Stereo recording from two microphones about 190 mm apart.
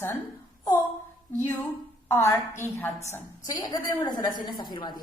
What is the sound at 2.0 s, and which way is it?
A woman's voice, 15° left (ahead or behind).